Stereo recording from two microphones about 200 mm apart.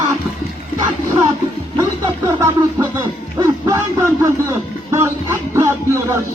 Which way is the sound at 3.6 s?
15° right (ahead or behind).